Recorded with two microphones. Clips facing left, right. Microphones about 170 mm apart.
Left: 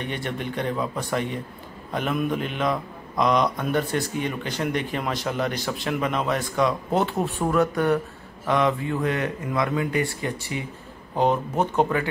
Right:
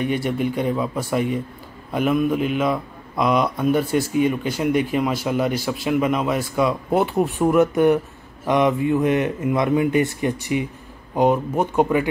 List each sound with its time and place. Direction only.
0.0 s mantra: 10° right (ahead or behind)
7.2 s speech: 20° right (ahead or behind)
11.1 s mantra: 10° right (ahead or behind)